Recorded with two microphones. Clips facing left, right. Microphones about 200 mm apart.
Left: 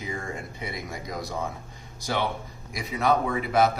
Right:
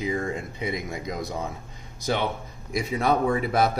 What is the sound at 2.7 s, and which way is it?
Speech, 30° right (ahead or behind).